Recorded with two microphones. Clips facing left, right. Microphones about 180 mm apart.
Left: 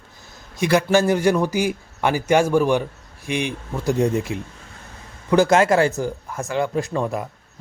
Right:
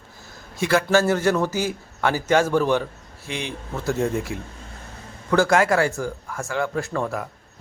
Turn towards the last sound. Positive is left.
turn(degrees=20)  # may be behind; listen again after turning